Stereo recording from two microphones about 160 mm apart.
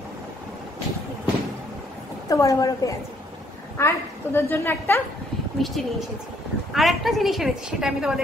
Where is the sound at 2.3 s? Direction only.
20° left (ahead or behind).